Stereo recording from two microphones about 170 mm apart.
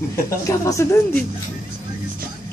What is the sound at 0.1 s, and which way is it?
Speech, 20° left (ahead or behind).